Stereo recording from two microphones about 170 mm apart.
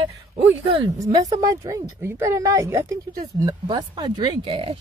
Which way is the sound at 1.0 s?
20° right (ahead or behind).